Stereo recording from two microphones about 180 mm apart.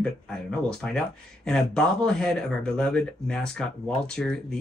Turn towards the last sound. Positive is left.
turn(degrees=5)  # may be behind; listen again after turning